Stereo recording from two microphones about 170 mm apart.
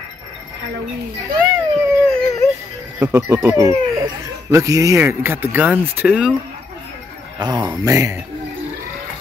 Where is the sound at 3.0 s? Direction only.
15° right (ahead or behind).